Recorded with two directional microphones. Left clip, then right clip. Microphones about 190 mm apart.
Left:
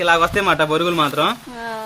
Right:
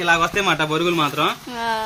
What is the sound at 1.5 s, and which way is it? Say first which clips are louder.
Speech: right 5 dB; 10° right (ahead or behind).